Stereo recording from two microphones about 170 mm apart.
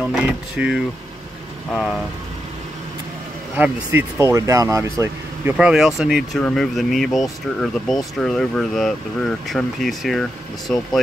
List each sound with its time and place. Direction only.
0.0 s speech: 5° right (ahead or behind)
3.5 s speech: 10° right (ahead or behind); by 10.8 s 5° left (ahead or behind)